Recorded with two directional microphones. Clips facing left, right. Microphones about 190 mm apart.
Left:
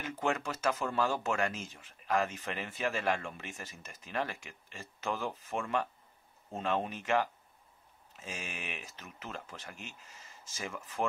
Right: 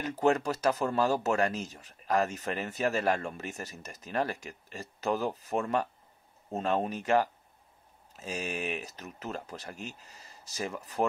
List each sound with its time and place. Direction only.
0.0 s speech: 40° right (ahead or behind)